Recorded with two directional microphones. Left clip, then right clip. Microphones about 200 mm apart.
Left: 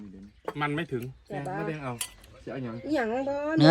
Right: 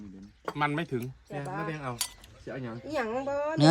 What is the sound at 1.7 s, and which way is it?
Speech, centre (ahead or behind).